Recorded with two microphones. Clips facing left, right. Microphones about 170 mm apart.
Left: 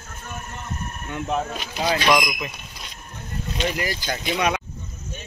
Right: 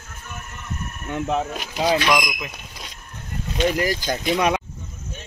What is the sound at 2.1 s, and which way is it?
Speech, 5° left (ahead or behind).